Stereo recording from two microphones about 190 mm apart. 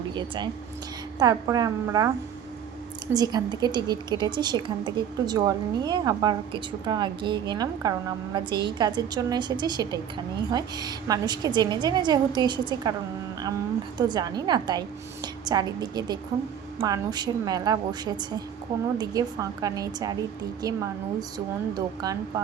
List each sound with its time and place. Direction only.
0.1 s a woman's voice: 25° right (ahead or behind)
14.1 s a woman's voice: 20° right (ahead or behind)